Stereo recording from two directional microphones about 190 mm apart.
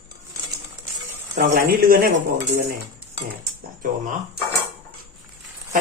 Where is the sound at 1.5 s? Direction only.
50° right (ahead or behind).